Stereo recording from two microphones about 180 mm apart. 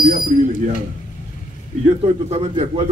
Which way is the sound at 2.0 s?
35° right (ahead or behind).